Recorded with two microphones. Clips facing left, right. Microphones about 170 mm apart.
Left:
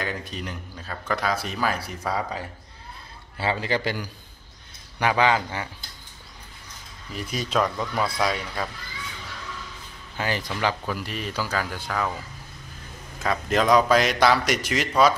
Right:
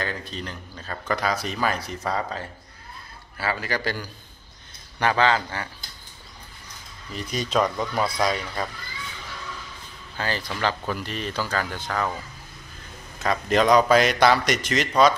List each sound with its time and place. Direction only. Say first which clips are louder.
0.0 s speech: even; 15° left (ahead or behind)
3.3 s a man's voice: left 2 dB; 25° left (ahead or behind)
7.2 s speech: right 1 dB; 5° left (ahead or behind)
10.1 s speech: left 1 dB; 15° left (ahead or behind)
13.2 s speech: right 2 dB; centre (ahead or behind)